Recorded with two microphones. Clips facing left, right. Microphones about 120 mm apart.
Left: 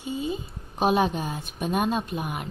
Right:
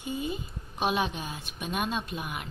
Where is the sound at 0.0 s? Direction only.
20° left (ahead or behind).